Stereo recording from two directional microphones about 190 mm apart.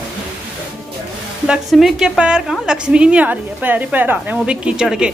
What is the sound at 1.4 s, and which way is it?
A woman's voice, 5° right (ahead or behind).